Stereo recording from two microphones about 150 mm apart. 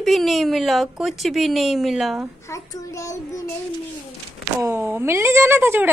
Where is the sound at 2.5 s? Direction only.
20° left (ahead or behind).